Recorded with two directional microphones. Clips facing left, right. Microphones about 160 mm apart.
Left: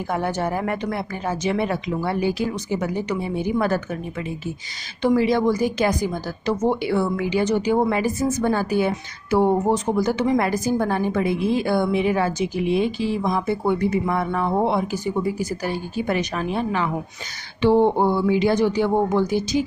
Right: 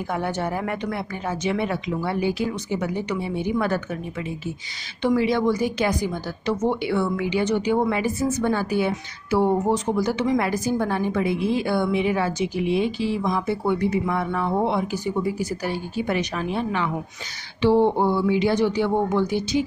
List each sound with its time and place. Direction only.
0.1 s speech: 40° left (ahead or behind)
5.0 s a woman's voice: 40° left (ahead or behind)